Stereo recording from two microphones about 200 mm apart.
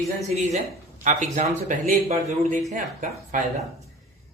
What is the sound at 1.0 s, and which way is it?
Speech, 35° right (ahead or behind).